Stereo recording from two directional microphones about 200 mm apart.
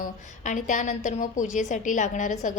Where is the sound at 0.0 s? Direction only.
40° left (ahead or behind).